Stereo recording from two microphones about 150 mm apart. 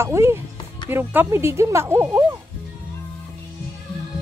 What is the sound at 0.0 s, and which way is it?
Speech, 15° right (ahead or behind).